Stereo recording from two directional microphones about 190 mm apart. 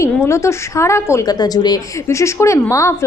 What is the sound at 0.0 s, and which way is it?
A woman's voice, 15° left (ahead or behind).